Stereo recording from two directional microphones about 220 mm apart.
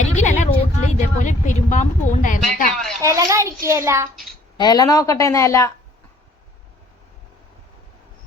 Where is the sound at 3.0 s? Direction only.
15° right (ahead or behind).